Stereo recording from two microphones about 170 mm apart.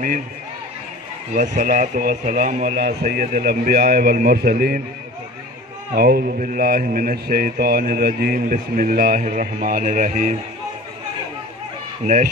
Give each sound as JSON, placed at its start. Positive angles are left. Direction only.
{"t": 1.3, "sound": "speech", "side_deg": -50}
{"t": 3.1, "sound": "a man's voice", "side_deg": -60}
{"t": 5.9, "sound": "a man's voice", "side_deg": -60}